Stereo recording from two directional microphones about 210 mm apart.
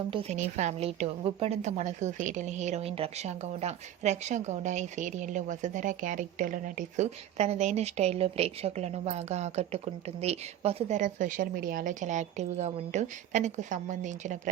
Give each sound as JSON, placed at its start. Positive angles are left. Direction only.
{"t": 0.1, "sound": "a woman's voice", "side_deg": -30}